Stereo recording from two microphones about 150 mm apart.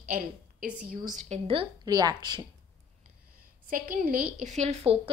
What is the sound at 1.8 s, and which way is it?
Speech, 25° right (ahead or behind).